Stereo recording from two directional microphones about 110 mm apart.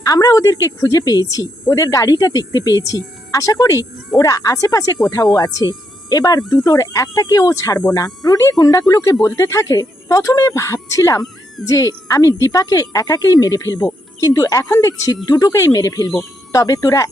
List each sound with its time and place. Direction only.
0.0 s a woman's voice: 35° left (ahead or behind)